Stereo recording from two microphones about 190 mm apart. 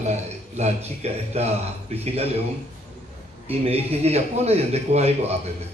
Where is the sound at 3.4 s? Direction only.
30° right (ahead or behind).